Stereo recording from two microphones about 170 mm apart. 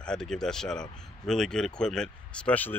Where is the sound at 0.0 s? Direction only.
5° left (ahead or behind).